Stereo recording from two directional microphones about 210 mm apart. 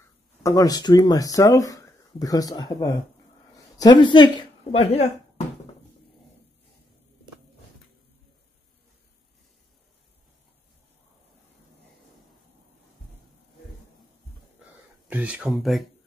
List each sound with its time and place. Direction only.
0.4 s speech: 15° left (ahead or behind)
15.0 s speech: 5° right (ahead or behind)